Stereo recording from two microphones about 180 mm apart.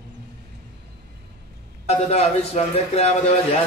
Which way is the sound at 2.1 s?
35° left (ahead or behind).